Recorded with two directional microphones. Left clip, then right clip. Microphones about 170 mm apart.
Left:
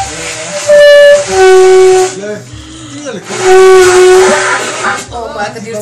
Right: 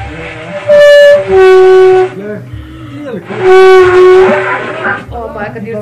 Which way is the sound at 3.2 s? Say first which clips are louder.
Even; 40° left (ahead or behind).